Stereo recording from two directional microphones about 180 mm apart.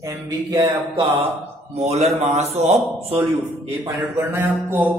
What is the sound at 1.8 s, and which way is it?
A man's voice, 35° right (ahead or behind).